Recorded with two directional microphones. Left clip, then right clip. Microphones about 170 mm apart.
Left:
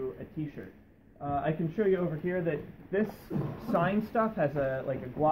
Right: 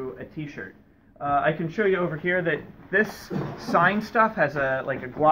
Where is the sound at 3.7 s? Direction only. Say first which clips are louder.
Right 8 dB; 25° left (ahead or behind).